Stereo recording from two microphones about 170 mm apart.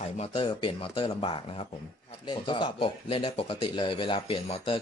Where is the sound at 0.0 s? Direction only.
35° left (ahead or behind).